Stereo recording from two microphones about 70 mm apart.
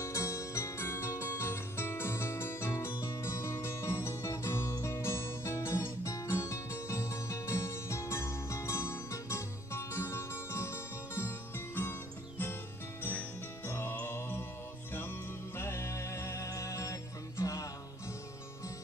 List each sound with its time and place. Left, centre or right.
0.0 s music: left
13.7 s music: left
14.0 s mantra: left
14.9 s music: left